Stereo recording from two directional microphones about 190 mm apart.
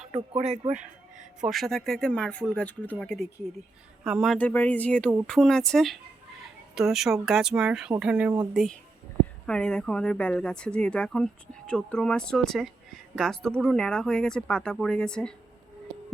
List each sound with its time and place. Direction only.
0.3 s speech: 35° right (ahead or behind)
1.5 s speech: centre (ahead or behind)